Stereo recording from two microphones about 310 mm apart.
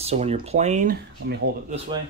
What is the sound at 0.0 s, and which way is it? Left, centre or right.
Speech, centre.